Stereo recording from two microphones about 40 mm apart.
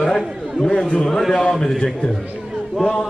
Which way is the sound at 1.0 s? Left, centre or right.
Centre.